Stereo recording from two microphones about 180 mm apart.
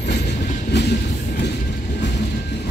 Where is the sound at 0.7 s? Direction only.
70° left (ahead or behind).